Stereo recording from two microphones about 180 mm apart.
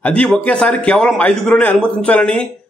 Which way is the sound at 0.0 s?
5° left (ahead or behind).